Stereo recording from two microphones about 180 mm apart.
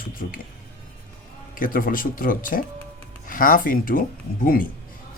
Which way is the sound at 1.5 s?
50° left (ahead or behind).